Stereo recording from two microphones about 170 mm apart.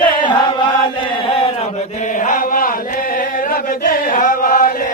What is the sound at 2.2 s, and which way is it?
Chant, 55° left (ahead or behind).